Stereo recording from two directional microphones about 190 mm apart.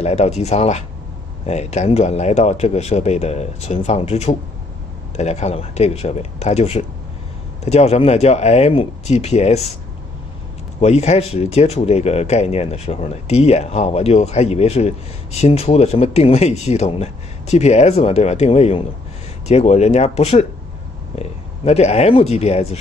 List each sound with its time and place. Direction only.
0.0 s speech: 35° left (ahead or behind)
10.8 s speech: 35° left (ahead or behind)